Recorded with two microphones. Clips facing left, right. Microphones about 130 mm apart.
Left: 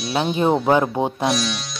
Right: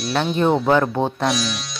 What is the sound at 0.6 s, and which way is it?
Speech, 15° left (ahead or behind).